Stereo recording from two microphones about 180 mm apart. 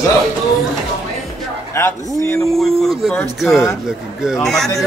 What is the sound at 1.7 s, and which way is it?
Speech, 15° left (ahead or behind).